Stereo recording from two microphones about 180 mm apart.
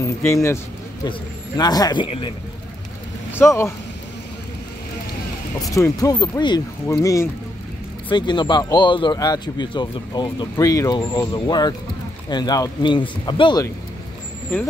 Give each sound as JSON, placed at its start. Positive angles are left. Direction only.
{"t": 0.0, "sound": "speech", "side_deg": 15}
{"t": 1.6, "sound": "speech", "side_deg": 20}
{"t": 3.3, "sound": "speech", "side_deg": 15}
{"t": 5.6, "sound": "speech", "side_deg": 20}